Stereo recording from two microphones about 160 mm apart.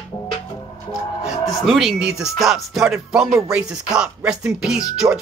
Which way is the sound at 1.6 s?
Centre (ahead or behind).